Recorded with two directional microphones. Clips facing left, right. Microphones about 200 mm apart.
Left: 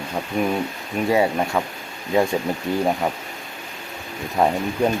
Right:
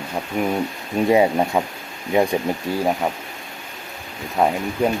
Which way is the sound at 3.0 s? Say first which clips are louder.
Even; 5° right (ahead or behind).